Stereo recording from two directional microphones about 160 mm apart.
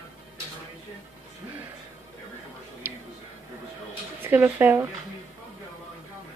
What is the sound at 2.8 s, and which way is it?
Music, 15° right (ahead or behind).